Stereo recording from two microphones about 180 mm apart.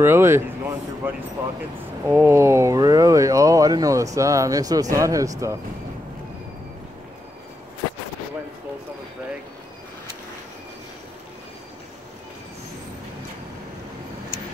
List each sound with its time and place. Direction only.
0.0 s speech: 15° right (ahead or behind)